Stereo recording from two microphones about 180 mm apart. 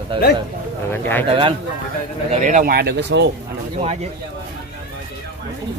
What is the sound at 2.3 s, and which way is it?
Speech, 40° right (ahead or behind).